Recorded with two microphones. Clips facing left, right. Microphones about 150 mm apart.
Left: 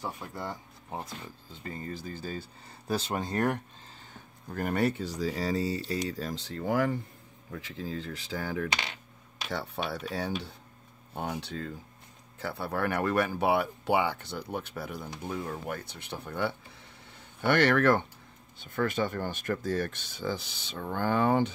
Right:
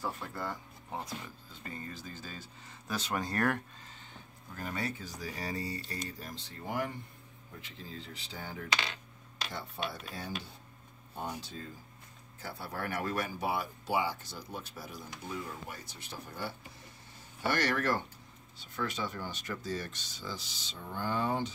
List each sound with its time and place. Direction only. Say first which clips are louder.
0.0 s speech: left 1 dB; 15° left (ahead or behind)
1.9 s speech: left 7 dB; 35° left (ahead or behind); by 3.6 s 20° left (ahead or behind)
4.5 s speech: left 9 dB; 60° left (ahead or behind); by 8.6 s 90° left
9.5 s speech: left 7 dB; 75° left (ahead or behind)